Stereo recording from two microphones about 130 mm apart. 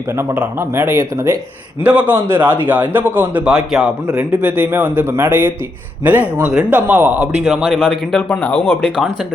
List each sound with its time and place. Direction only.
0.2 s speech: 20° right (ahead or behind)
1.8 s a man's voice: 10° right (ahead or behind)
7.4 s speech: centre (ahead or behind)